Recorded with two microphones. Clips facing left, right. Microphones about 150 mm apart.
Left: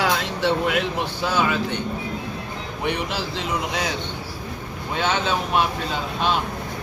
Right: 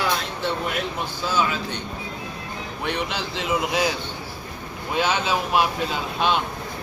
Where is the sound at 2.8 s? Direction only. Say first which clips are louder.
Left 2 dB; 10° left (ahead or behind).